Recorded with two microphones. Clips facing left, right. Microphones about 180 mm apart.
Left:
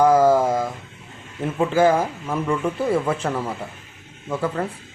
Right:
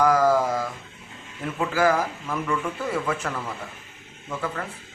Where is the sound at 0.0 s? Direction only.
25° left (ahead or behind).